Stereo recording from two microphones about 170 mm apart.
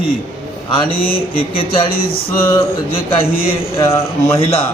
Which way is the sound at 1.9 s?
60° left (ahead or behind).